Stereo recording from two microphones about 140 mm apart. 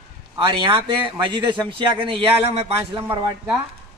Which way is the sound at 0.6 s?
35° right (ahead or behind).